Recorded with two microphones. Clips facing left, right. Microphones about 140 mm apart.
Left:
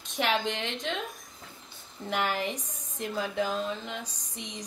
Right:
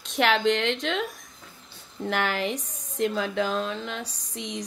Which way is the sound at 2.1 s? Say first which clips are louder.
Right 3 dB; 90° right.